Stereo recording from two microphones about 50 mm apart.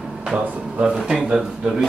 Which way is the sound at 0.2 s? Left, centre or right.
Centre.